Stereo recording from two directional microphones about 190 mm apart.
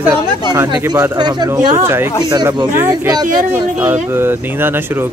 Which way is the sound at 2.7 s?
10° right (ahead or behind).